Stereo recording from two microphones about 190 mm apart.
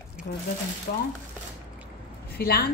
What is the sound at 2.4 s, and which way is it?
Speech, 55° left (ahead or behind).